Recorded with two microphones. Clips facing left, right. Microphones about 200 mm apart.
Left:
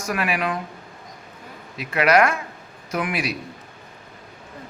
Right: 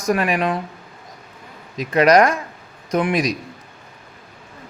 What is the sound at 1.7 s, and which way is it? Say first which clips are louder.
A man's voice: right 5 dB; 35° right (ahead or behind).